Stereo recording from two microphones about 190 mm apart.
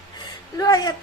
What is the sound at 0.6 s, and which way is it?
Speech, 20° left (ahead or behind).